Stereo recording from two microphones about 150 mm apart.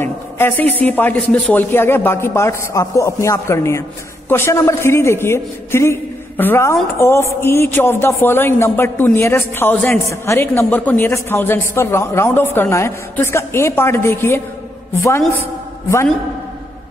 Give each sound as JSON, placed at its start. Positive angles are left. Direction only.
{"t": 0.0, "sound": "a man's voice", "side_deg": 15}